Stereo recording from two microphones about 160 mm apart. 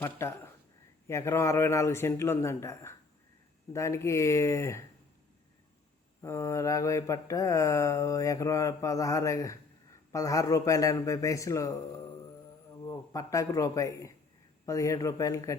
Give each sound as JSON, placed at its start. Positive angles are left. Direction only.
{"t": 0.0, "sound": "a man's voice", "side_deg": 15}
{"t": 3.7, "sound": "mantra", "side_deg": 20}
{"t": 6.2, "sound": "mantra", "side_deg": 20}
{"t": 12.9, "sound": "mantra", "side_deg": 20}